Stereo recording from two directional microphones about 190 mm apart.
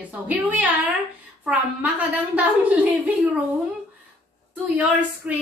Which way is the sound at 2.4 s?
5° right (ahead or behind).